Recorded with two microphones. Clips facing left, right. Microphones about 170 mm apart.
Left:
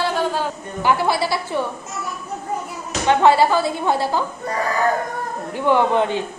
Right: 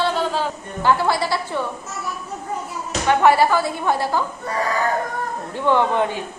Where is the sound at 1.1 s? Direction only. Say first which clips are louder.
Left 1 dB; 25° left (ahead or behind).